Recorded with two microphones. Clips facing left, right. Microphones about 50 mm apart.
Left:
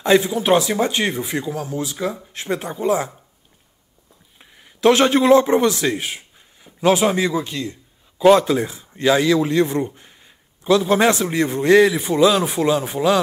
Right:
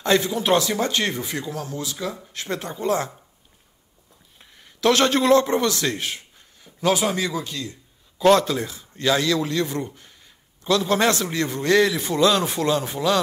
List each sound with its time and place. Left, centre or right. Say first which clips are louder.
0.0 s speech: left 4 dB; centre
4.4 s a man's voice: left 5 dB; centre
8.2 s a man's voice: left 4 dB; centre